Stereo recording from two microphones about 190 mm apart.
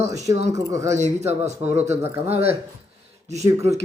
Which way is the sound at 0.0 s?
15° right (ahead or behind).